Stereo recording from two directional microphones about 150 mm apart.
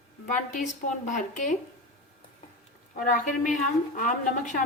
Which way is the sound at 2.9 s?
60° left (ahead or behind).